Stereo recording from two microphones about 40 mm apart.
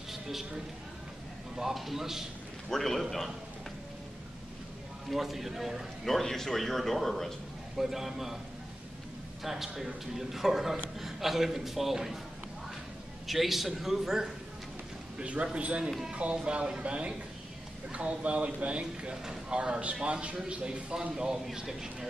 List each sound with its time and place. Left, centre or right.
0.1 s a sound: centre
1.6 s a man's voice: centre
2.7 s speech: centre
5.1 s a man's voice: centre
6.2 s speech: centre
7.7 s a man's voice: centre
9.4 s a man's voice: centre
13.3 s a man's voice: centre
15.1 s a man's voice: right
21.0 s a man's voice: centre